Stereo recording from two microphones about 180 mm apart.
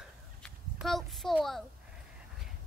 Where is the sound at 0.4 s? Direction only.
Centre (ahead or behind).